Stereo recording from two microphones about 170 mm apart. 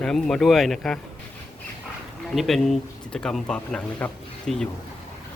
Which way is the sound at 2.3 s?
Centre (ahead or behind).